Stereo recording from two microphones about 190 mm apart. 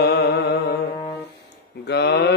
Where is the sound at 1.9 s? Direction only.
60° left (ahead or behind).